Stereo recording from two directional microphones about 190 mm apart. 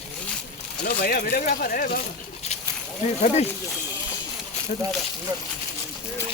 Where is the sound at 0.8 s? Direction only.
50° left (ahead or behind).